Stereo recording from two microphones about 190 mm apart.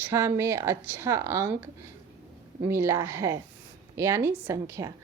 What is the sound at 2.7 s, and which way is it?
A woman's voice, 15° right (ahead or behind).